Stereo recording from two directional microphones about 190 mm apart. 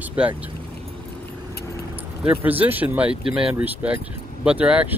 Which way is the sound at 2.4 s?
10° right (ahead or behind).